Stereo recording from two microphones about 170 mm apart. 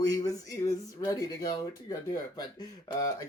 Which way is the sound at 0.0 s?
20° left (ahead or behind).